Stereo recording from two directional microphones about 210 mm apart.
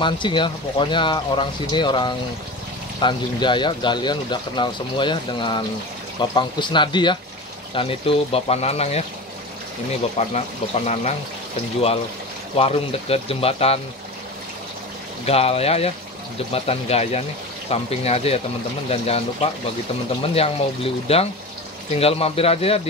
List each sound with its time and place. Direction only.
0.0 s speech: 20° left (ahead or behind)
10.2 s speech: 30° left (ahead or behind)
12.5 s speech: 30° left (ahead or behind)
15.2 s speech: 30° left (ahead or behind)